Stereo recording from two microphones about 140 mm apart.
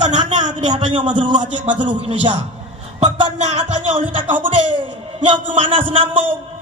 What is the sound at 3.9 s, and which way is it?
Speech, 40° right (ahead or behind).